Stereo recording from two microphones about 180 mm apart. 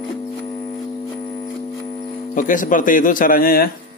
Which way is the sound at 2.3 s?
45° left (ahead or behind).